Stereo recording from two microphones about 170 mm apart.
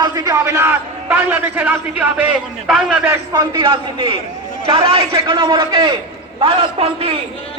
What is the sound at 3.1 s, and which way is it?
A man's voice, 20° right (ahead or behind).